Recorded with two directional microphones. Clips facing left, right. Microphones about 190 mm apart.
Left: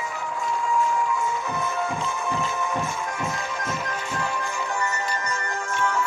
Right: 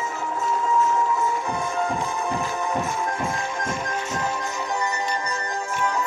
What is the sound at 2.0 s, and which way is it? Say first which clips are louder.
Music: right 1 dB; 15° right (ahead or behind).